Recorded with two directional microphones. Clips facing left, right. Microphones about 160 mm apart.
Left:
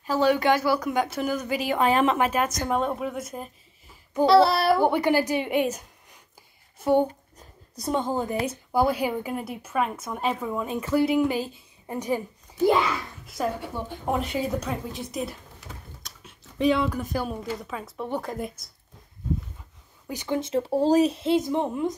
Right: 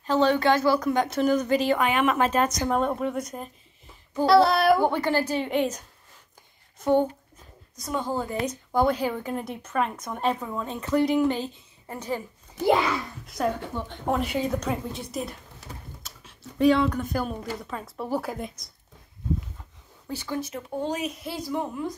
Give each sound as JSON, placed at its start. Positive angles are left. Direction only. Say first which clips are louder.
{"t": 0.0, "sound": "a woman's voice", "louder": "even", "side_deg": 10}
{"t": 1.8, "sound": "speech", "louder": "left 2 dB", "side_deg": 35}
{"t": 2.1, "sound": "a woman's voice", "louder": "right 1 dB", "side_deg": 10}
{"t": 4.8, "sound": "a woman's voice", "louder": "left 2 dB", "side_deg": 15}
{"t": 6.8, "sound": "speech", "louder": "even", "side_deg": 10}
{"t": 7.7, "sound": "a woman's voice", "louder": "left 3 dB", "side_deg": 25}
{"t": 13.4, "sound": "a woman's voice", "louder": "right 1 dB", "side_deg": 5}
{"t": 16.5, "sound": "speech", "louder": "right 2 dB", "side_deg": 0}
{"t": 20.1, "sound": "speech", "louder": "left 4 dB", "side_deg": 20}